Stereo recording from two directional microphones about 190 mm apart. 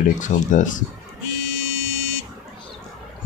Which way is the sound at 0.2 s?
40° left (ahead or behind).